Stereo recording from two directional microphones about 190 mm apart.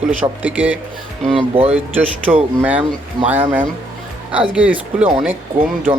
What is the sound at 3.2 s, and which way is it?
Speech, 25° right (ahead or behind).